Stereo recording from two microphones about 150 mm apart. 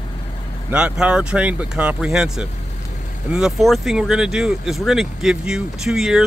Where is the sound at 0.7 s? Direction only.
5° right (ahead or behind).